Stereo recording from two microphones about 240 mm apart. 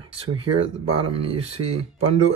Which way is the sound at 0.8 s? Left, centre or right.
Right.